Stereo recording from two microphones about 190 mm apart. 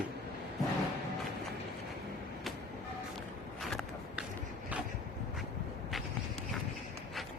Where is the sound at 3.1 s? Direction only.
Centre (ahead or behind).